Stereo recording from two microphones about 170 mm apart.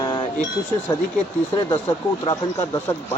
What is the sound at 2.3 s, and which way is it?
Speech, 15° left (ahead or behind).